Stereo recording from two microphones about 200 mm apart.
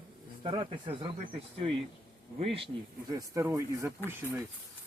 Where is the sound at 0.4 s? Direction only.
25° right (ahead or behind).